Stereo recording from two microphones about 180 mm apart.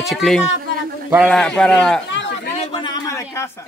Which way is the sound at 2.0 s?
85° left.